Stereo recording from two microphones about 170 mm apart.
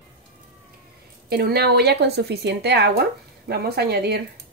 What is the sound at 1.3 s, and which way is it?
Speech, 65° right (ahead or behind).